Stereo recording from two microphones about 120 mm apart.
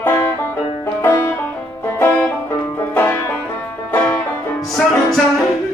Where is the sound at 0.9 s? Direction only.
20° left (ahead or behind).